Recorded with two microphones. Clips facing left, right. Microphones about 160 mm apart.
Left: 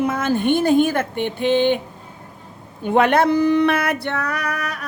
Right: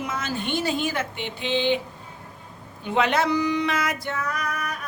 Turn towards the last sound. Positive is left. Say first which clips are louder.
# left 4 dB
turn(degrees=75)  # may be behind; listen again after turning